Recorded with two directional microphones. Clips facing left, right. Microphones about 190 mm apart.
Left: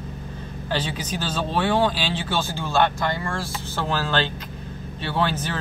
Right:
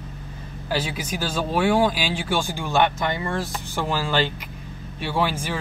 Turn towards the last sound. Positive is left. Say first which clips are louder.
# even
turn(degrees=-10)  # may be behind; listen again after turning